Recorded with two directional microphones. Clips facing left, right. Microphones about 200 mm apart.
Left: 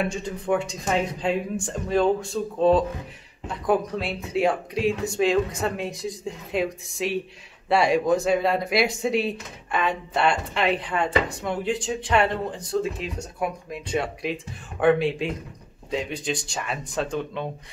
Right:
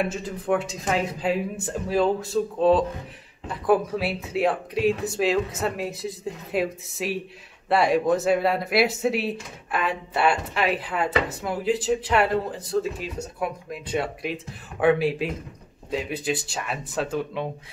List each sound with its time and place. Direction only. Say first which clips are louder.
0.0 s speech: even; 5° right (ahead or behind)